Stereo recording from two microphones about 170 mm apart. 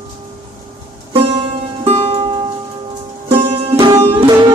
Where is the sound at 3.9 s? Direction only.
40° right (ahead or behind).